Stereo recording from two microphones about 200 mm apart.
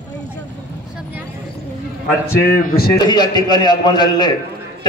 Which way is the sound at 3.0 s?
20° left (ahead or behind).